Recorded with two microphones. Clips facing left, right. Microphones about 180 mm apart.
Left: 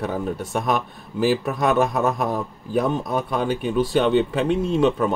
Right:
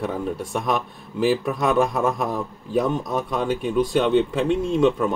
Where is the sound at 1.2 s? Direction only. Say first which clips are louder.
Even; centre (ahead or behind).